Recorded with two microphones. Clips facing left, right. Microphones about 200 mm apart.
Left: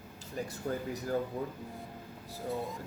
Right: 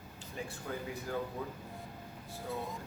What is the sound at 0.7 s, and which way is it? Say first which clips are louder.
Speech: left 6 dB; 40° left (ahead or behind).